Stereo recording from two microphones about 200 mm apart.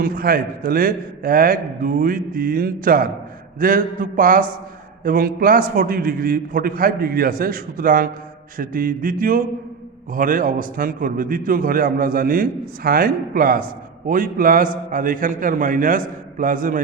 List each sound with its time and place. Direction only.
0.0 s a man's voice: 45° right (ahead or behind)